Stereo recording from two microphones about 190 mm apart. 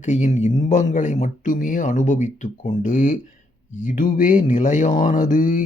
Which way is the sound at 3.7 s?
45° left (ahead or behind).